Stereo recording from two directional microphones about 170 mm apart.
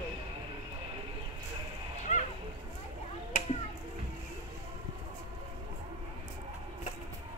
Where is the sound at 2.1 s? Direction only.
40° left (ahead or behind).